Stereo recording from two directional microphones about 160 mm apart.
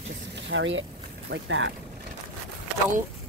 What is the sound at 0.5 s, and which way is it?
Speech, 90° right.